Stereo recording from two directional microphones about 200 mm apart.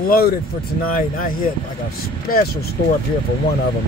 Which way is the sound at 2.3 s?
45° left (ahead or behind).